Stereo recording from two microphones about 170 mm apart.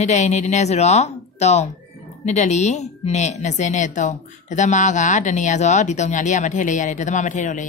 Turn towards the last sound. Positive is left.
turn(degrees=45)  # may be behind; listen again after turning